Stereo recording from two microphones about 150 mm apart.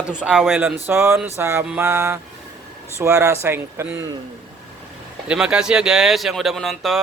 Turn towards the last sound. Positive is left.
turn(degrees=0)  # may be behind; listen again after turning